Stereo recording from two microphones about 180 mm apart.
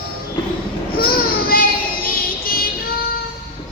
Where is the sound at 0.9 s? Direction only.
55° left (ahead or behind).